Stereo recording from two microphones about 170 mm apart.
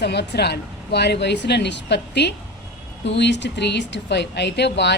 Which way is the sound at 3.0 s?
90° left.